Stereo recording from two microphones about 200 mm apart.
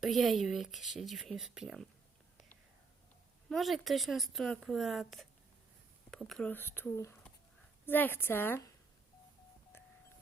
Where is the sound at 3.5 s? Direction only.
Centre (ahead or behind).